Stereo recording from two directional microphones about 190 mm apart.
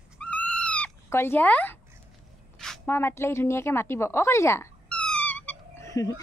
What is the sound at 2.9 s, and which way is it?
Speech, 10° left (ahead or behind).